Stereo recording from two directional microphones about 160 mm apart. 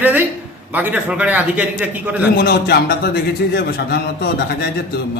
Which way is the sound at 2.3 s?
85° left.